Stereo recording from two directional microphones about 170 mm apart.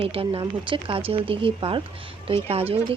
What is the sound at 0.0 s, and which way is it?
Speech, 35° right (ahead or behind).